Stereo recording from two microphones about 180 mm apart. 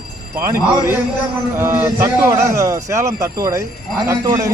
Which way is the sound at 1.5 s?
15° right (ahead or behind).